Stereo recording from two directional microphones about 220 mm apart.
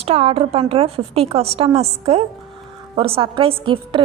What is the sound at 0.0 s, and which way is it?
A woman's voice, 25° right (ahead or behind).